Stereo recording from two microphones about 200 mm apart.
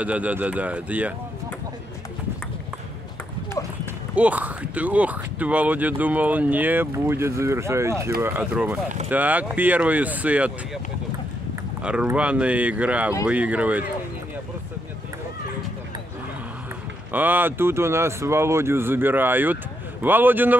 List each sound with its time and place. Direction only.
0.0 s speech: 5° right (ahead or behind)
4.1 s speech: 5° right (ahead or behind)
11.8 s speech: 5° right (ahead or behind)
17.1 s speech: 10° right (ahead or behind)